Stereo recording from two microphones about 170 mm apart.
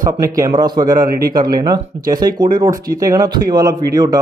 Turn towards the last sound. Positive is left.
turn(degrees=-20)  # may be behind; listen again after turning